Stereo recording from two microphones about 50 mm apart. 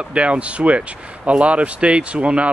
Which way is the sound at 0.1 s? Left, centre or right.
Right.